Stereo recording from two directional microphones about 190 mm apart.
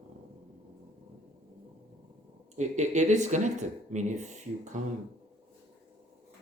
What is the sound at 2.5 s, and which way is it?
Speech, 40° right (ahead or behind).